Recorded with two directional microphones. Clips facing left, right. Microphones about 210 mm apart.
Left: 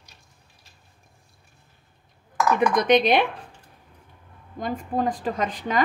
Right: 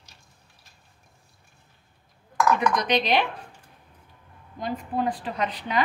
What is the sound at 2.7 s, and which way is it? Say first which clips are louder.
Speech: left 5 dB; 55° left (ahead or behind).